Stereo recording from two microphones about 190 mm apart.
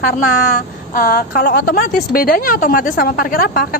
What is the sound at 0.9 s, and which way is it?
A woman's voice, 50° left (ahead or behind).